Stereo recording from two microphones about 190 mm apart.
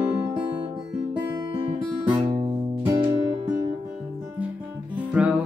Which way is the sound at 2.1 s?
20° right (ahead or behind).